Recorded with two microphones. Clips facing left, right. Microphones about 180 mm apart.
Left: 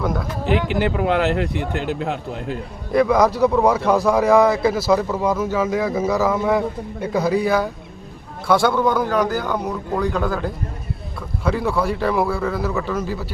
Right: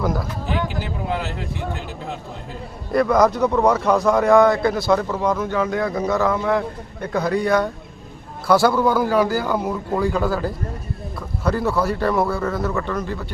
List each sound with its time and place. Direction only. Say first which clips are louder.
0.0 s a man's voice: even; centre (ahead or behind)
0.4 s speech: left 9 dB; 70° left (ahead or behind)
2.9 s a man's voice: even; centre (ahead or behind)